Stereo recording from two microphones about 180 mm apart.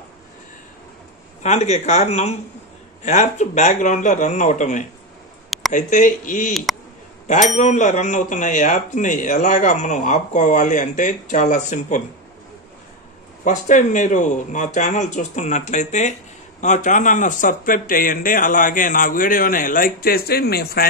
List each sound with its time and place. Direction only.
1.4 s speech: 40° left (ahead or behind)
6.5 s a man's voice: centre (ahead or behind)
7.2 s speech: 40° left (ahead or behind)
13.4 s speech: 45° left (ahead or behind); by 20.8 s 60° left (ahead or behind)